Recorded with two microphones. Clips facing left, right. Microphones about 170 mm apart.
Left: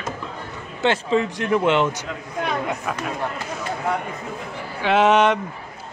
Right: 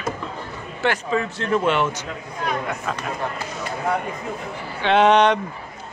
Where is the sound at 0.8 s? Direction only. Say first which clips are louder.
Left 3 dB; 20° left (ahead or behind).